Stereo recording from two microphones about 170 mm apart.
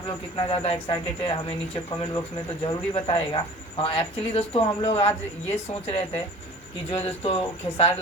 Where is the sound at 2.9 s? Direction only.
30° left (ahead or behind).